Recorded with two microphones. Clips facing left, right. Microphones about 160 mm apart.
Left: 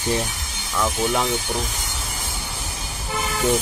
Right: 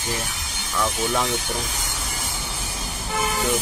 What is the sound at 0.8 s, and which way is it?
Speech, 10° left (ahead or behind).